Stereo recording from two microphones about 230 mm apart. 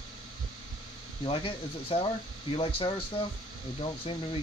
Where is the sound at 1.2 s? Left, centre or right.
Left.